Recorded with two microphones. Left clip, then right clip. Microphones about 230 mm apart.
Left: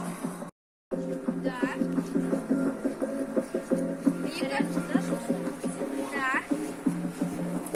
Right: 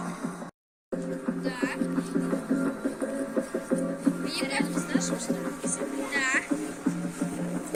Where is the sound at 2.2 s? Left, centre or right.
Centre.